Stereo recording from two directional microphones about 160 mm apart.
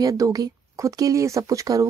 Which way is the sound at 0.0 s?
20° right (ahead or behind).